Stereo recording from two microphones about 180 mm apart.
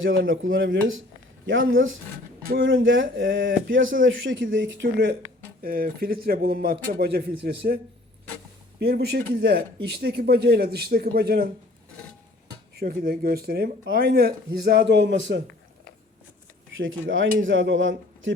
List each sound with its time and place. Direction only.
0.0 s speech: 90° right
5.6 s speech: 55° right (ahead or behind)
8.8 s speech: 60° right (ahead or behind)
12.7 s speech: 55° right (ahead or behind); by 15.4 s 90° right
16.7 s speech: 90° right